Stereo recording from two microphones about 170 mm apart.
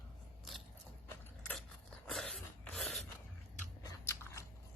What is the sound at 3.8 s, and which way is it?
Biting, 20° left (ahead or behind).